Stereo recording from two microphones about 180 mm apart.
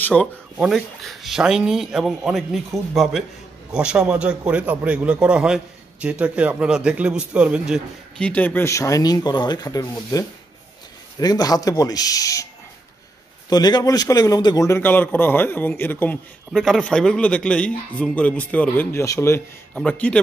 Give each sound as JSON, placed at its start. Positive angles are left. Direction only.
{"t": 0.0, "sound": "a man's voice", "side_deg": 5}
{"t": 8.3, "sound": "speech", "side_deg": 10}
{"t": 13.5, "sound": "a man's voice", "side_deg": 25}
{"t": 19.7, "sound": "a man's voice", "side_deg": 5}